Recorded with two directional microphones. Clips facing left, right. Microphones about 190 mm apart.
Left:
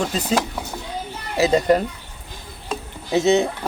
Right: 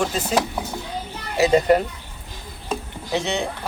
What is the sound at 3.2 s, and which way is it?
Speech, 40° left (ahead or behind).